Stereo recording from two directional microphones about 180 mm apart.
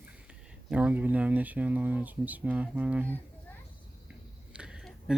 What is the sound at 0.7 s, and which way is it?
Speech, 10° right (ahead or behind).